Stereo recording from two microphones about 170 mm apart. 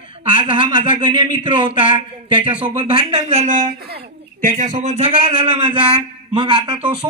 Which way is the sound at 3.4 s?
50° right (ahead or behind).